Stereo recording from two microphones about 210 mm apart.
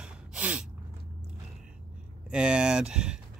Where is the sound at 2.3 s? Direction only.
5° right (ahead or behind).